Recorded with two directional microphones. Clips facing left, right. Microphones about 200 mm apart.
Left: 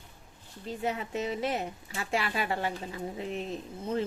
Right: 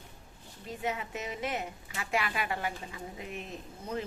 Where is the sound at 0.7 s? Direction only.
30° left (ahead or behind).